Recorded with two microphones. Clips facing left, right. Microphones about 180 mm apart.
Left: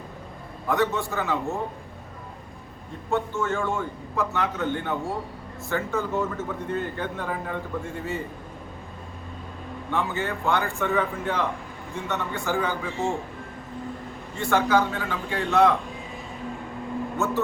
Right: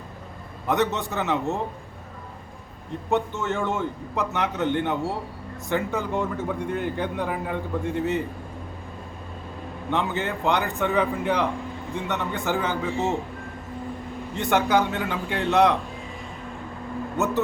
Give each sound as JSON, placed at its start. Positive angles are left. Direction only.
{"t": 0.7, "sound": "a man's voice", "side_deg": -20}
{"t": 3.1, "sound": "a man's voice", "side_deg": -20}
{"t": 9.9, "sound": "a man's voice", "side_deg": -20}
{"t": 14.3, "sound": "a man's voice", "side_deg": -20}
{"t": 17.2, "sound": "a man's voice", "side_deg": -20}